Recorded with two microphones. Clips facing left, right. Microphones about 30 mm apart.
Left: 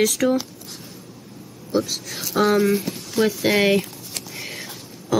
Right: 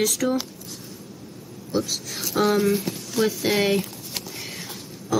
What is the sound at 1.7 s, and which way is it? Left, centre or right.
Speech, centre.